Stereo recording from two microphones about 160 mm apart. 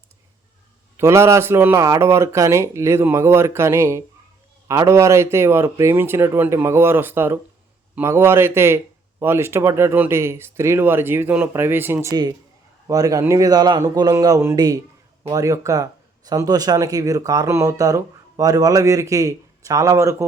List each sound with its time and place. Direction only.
0.9 s speech: 15° right (ahead or behind)